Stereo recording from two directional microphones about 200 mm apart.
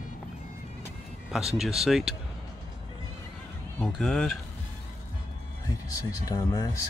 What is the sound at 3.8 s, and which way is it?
Speech, 5° left (ahead or behind).